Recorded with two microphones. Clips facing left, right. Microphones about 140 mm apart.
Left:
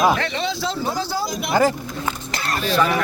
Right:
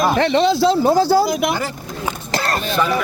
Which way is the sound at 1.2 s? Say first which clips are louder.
Right 8 dB; 70° right (ahead or behind).